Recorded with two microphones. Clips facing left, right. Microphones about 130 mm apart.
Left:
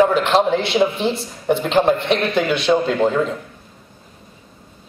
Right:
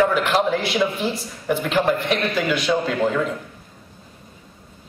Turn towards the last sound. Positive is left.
turn(degrees=25)  # may be behind; listen again after turning